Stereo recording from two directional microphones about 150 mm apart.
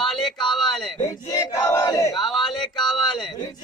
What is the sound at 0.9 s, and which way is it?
Battle cry, 20° left (ahead or behind).